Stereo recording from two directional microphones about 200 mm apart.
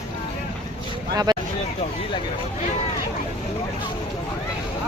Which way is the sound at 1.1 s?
20° right (ahead or behind).